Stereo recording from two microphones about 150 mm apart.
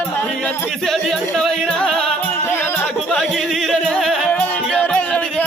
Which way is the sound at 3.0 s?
Centre (ahead or behind).